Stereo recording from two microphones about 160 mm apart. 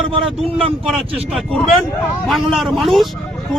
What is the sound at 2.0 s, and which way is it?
Speech, centre (ahead or behind).